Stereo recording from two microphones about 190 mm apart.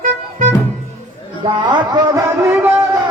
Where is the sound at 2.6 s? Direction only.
15° right (ahead or behind).